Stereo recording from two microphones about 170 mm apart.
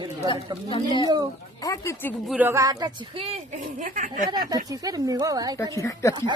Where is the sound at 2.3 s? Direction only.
10° right (ahead or behind).